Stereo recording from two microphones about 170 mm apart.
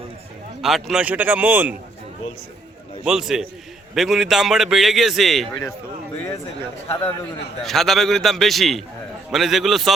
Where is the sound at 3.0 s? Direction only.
5° right (ahead or behind).